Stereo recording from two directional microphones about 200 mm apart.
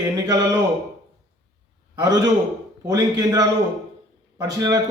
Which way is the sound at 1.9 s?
20° right (ahead or behind).